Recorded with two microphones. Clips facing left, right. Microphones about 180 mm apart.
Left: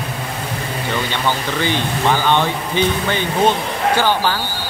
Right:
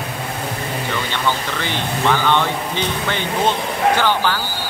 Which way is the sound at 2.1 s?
15° left (ahead or behind).